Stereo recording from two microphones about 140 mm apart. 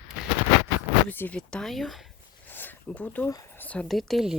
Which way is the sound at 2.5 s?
15° left (ahead or behind).